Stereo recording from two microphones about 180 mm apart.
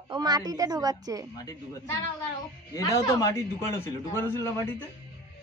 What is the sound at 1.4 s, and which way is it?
A man's voice, 20° left (ahead or behind).